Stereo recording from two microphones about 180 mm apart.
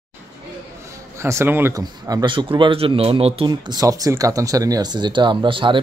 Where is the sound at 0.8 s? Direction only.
15° right (ahead or behind).